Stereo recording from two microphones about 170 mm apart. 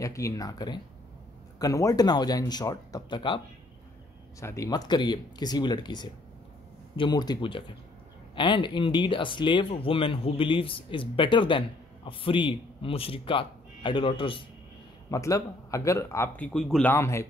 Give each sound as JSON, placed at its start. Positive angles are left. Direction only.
{"t": 0.0, "sound": "speech", "side_deg": 20}
{"t": 4.4, "sound": "speech", "side_deg": 20}
{"t": 15.0, "sound": "speech", "side_deg": 20}
{"t": 16.9, "sound": "speech", "side_deg": 15}